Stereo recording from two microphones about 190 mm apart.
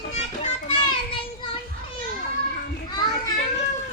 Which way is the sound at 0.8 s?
25° left (ahead or behind).